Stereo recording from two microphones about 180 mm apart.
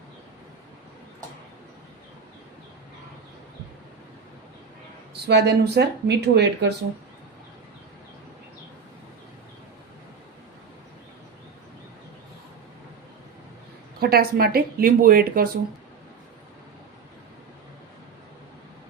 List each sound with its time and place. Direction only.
5.1 s speech: 65° right (ahead or behind)
14.0 s speech: 60° right (ahead or behind)